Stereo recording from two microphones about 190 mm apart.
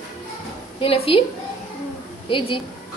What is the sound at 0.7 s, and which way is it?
Speech, 30° left (ahead or behind).